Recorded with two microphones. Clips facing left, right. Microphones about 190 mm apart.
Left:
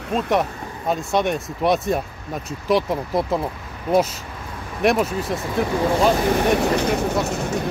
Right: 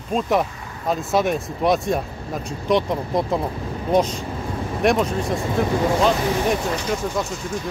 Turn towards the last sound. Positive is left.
turn(degrees=65)  # may be behind; listen again after turning